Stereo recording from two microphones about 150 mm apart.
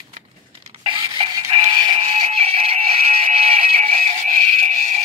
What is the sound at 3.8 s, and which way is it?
Music, 55° right (ahead or behind).